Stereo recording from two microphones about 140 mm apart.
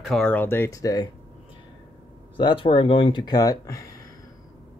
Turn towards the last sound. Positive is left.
turn(degrees=25)  # may be behind; listen again after turning